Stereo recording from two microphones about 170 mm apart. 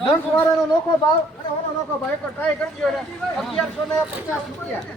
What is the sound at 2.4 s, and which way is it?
A man's voice, centre (ahead or behind).